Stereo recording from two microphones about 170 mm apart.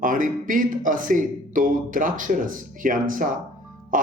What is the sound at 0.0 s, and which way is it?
Speech, 50° right (ahead or behind).